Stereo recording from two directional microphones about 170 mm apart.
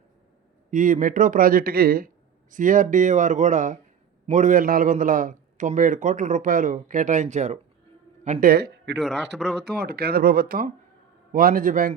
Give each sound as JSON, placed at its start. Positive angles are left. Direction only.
{"t": 0.7, "sound": "a man's voice", "side_deg": -50}
{"t": 8.4, "sound": "speech", "side_deg": -75}
{"t": 9.0, "sound": "speech", "side_deg": 0}
{"t": 9.6, "sound": "a man's voice", "side_deg": -70}